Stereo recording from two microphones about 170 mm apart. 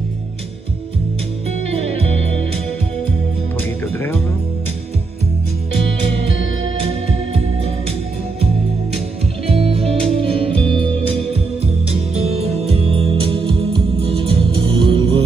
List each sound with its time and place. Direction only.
9.5 s music: 35° right (ahead or behind)